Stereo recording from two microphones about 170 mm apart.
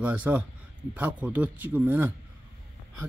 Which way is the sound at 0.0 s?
10° right (ahead or behind).